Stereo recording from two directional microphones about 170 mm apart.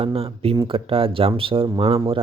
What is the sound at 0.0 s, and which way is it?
Speech, 35° right (ahead or behind).